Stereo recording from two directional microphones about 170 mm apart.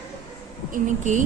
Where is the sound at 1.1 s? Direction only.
45° right (ahead or behind).